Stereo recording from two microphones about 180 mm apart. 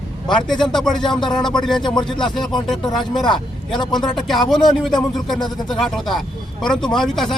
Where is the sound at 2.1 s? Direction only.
25° left (ahead or behind).